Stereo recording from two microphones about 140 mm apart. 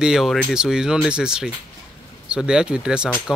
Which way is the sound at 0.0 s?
5° right (ahead or behind).